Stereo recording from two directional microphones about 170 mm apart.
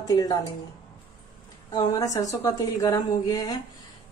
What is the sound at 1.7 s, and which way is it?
A woman's voice, 20° left (ahead or behind).